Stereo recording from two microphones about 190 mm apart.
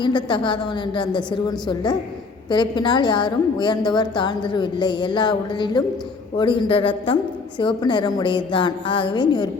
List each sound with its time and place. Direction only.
0.0 s a woman's voice: 25° left (ahead or behind)